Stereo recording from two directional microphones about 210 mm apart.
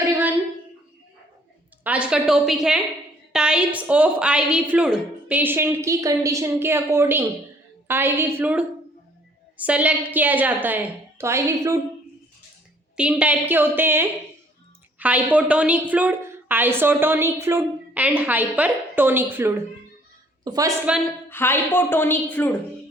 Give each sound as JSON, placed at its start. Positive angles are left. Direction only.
{"t": 1.8, "sound": "a woman's voice", "side_deg": -5}
{"t": 13.0, "sound": "a woman's voice", "side_deg": -5}
{"t": 21.2, "sound": "a woman's voice", "side_deg": 10}